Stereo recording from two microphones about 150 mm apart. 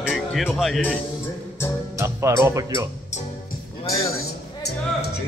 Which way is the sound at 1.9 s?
20° right (ahead or behind).